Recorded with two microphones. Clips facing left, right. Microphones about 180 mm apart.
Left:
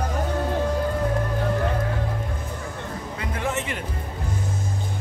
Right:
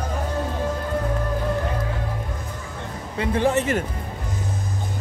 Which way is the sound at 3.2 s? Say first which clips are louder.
Right 8 dB; 30° right (ahead or behind).